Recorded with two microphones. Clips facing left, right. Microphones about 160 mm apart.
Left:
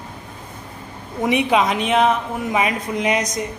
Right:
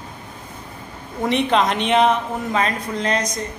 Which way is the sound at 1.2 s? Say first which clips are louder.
Left 1 dB; 10° left (ahead or behind).